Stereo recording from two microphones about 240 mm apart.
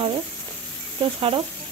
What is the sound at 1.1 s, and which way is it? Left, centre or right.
Speech, right.